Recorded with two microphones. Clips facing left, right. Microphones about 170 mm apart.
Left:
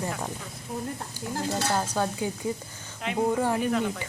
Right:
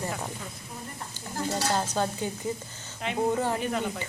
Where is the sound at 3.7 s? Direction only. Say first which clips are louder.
Left 3 dB; centre (ahead or behind).